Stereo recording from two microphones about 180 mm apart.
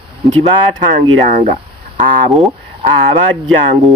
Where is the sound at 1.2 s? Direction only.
45° right (ahead or behind).